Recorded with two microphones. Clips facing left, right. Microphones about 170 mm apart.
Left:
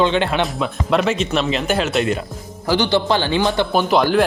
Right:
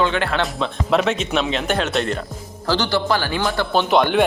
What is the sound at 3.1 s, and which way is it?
Speech, 25° left (ahead or behind).